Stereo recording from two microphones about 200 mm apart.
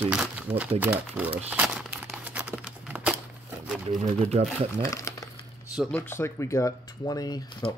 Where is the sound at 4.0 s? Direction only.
30° right (ahead or behind).